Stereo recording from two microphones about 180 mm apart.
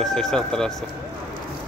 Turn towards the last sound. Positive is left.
turn(degrees=5)  # may be behind; listen again after turning